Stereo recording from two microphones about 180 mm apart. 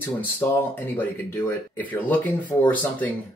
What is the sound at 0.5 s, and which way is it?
Speech, 10° left (ahead or behind).